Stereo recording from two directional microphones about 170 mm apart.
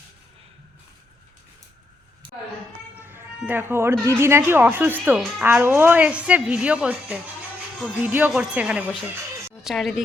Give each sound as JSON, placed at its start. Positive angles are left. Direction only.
{"t": 2.2, "sound": "a sound", "side_deg": -30}
{"t": 3.0, "sound": "music", "side_deg": -10}
{"t": 4.0, "sound": "speech", "side_deg": -15}